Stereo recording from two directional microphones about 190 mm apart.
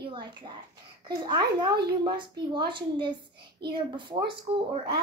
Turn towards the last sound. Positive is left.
turn(degrees=-30)  # may be behind; listen again after turning